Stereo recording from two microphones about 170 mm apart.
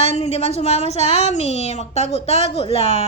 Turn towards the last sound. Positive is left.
turn(degrees=35)  # may be behind; listen again after turning